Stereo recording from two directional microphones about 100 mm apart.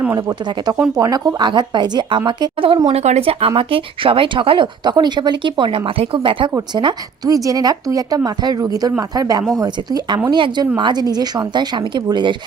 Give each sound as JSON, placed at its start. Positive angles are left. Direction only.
{"t": 0.2, "sound": "speech", "side_deg": -40}
{"t": 2.9, "sound": "speech", "side_deg": -80}
{"t": 7.3, "sound": "speech", "side_deg": -35}